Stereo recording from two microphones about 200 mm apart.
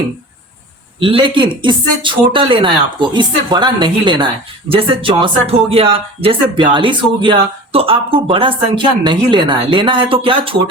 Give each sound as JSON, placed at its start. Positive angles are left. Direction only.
{"t": 0.9, "sound": "speech", "side_deg": -25}